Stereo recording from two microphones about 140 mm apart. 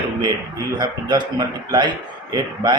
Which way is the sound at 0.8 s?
30° right (ahead or behind).